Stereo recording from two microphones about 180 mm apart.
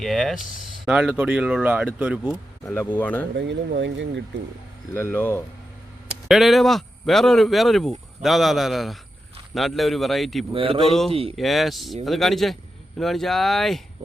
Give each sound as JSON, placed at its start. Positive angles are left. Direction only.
{"t": 0.0, "sound": "speech", "side_deg": 0}
{"t": 2.6, "sound": "speech", "side_deg": 10}
{"t": 3.3, "sound": "speech", "side_deg": -80}
{"t": 4.9, "sound": "speech", "side_deg": 10}
{"t": 6.2, "sound": "speech", "side_deg": 0}
{"t": 10.5, "sound": "speech", "side_deg": -30}
{"t": 10.8, "sound": "speech", "side_deg": 0}
{"t": 11.1, "sound": "speech", "side_deg": -30}
{"t": 11.3, "sound": "speech", "side_deg": 0}